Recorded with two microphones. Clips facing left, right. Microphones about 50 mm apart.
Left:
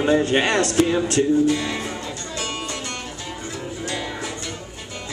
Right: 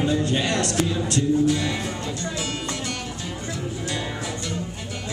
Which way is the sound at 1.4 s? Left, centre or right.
Centre.